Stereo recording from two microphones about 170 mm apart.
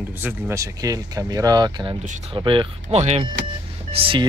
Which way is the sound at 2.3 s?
30° right (ahead or behind).